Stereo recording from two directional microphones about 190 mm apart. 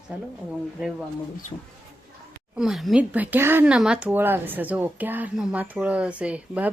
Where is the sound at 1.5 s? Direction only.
25° left (ahead or behind).